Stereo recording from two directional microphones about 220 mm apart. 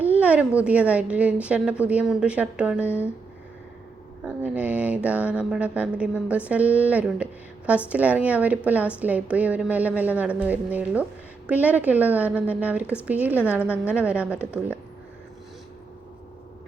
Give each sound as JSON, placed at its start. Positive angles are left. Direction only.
{"t": 0.2, "sound": "a woman's voice", "side_deg": -5}
{"t": 4.2, "sound": "a woman's voice", "side_deg": -5}